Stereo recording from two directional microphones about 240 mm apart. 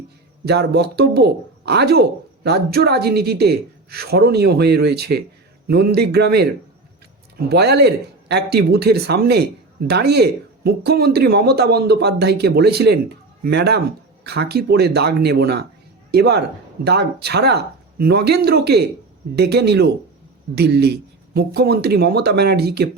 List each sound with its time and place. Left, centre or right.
0.4 s a man's voice: right